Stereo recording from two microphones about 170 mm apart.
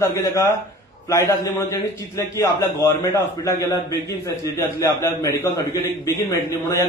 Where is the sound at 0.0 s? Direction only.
20° left (ahead or behind).